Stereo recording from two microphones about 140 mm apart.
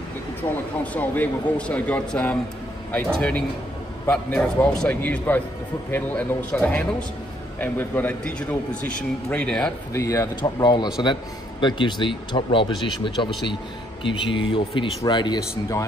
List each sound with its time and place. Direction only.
0.4 s a man's voice: 10° left (ahead or behind)
9.9 s speech: 25° left (ahead or behind)